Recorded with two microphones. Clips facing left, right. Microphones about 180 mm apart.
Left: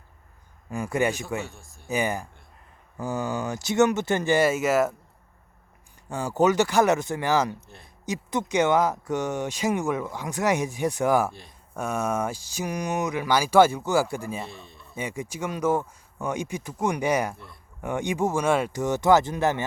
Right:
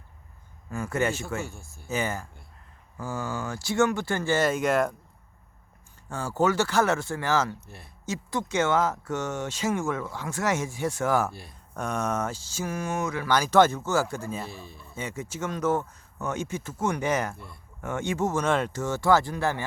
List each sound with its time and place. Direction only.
0.7 s speech: 15° left (ahead or behind)
1.4 s a man's voice: centre (ahead or behind)
1.9 s speech: 15° left (ahead or behind)
6.1 s speech: 15° left (ahead or behind)
11.3 s a man's voice: 5° right (ahead or behind)
11.7 s speech: 10° left (ahead or behind)
14.4 s a man's voice: 5° right (ahead or behind)
14.9 s speech: 10° left (ahead or behind)
17.3 s a man's voice: centre (ahead or behind)
17.7 s speech: 15° left (ahead or behind)